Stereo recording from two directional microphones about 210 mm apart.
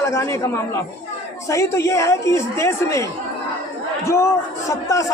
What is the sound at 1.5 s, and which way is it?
A woman's voice, 15° left (ahead or behind).